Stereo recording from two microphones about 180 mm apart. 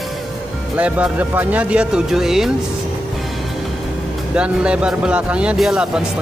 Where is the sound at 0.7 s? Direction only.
10° right (ahead or behind).